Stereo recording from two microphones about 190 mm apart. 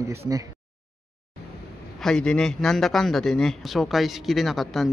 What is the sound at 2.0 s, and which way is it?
A man's voice, 5° left (ahead or behind).